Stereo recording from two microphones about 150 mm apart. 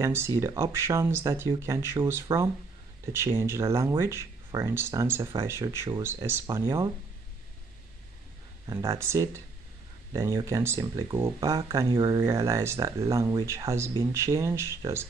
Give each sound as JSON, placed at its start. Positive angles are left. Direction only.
{"t": 0.0, "sound": "speech", "side_deg": -20}
{"t": 8.6, "sound": "speech", "side_deg": -20}